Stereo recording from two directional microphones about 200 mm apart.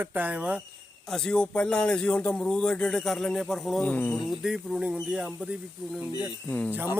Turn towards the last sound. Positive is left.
turn(degrees=-10)  # may be behind; listen again after turning